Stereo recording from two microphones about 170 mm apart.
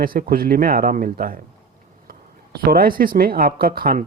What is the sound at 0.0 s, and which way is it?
Speech, 60° right (ahead or behind).